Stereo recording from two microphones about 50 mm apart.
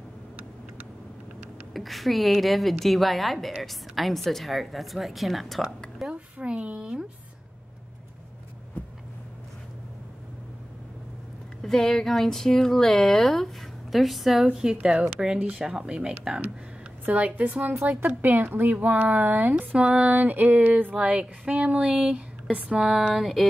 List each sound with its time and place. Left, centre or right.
1.7 s a woman's voice: centre
6.0 s a woman's voice: right
8.8 s vehicle: left
11.6 s a woman's voice: centre
17.0 s speech: right
20.9 s speech: centre